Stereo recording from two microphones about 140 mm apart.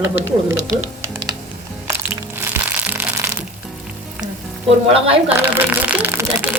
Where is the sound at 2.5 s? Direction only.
15° right (ahead or behind).